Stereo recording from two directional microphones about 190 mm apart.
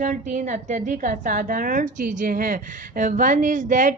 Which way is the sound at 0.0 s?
40° right (ahead or behind).